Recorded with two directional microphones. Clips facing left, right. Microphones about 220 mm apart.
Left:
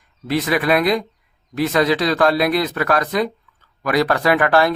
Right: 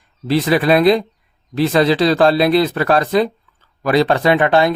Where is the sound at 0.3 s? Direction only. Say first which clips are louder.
Right 4 dB; 30° right (ahead or behind).